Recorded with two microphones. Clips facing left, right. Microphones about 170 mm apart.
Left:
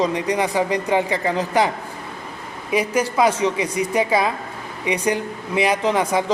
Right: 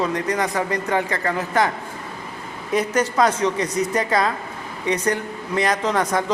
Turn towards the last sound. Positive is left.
turn(degrees=10)  # may be behind; listen again after turning